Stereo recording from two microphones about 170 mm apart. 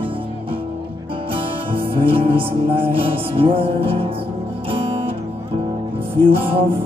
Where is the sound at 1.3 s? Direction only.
30° right (ahead or behind).